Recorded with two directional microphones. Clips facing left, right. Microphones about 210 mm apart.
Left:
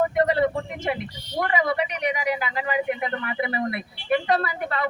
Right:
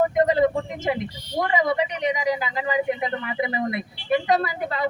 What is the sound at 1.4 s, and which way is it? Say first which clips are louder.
Speech: right 2 dB; 20° right (ahead or behind).